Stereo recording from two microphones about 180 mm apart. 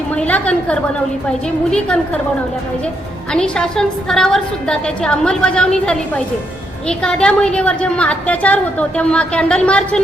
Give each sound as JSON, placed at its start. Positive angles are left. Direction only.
{"t": 0.2, "sound": "a woman's voice", "side_deg": 10}
{"t": 3.3, "sound": "a woman's voice", "side_deg": 5}